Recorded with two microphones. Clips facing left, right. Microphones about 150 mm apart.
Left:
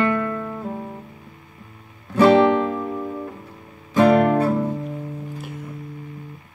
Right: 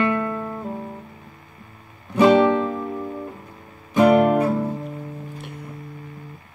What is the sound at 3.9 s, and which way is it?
Guitar, 20° right (ahead or behind).